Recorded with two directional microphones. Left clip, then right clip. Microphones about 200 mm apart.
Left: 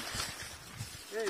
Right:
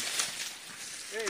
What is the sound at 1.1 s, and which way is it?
Speech, 50° left (ahead or behind).